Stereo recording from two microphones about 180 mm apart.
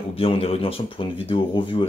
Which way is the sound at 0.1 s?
30° left (ahead or behind).